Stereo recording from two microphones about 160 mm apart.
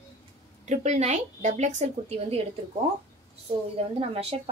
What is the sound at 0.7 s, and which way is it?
A woman's voice, 45° right (ahead or behind).